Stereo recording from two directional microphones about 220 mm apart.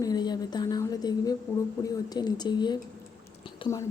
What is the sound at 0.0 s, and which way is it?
A woman's voice, 20° left (ahead or behind).